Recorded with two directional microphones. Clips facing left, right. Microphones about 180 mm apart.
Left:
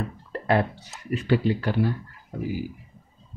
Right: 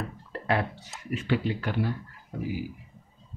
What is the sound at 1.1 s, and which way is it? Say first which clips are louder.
Speech: left 5 dB; 35° left (ahead or behind).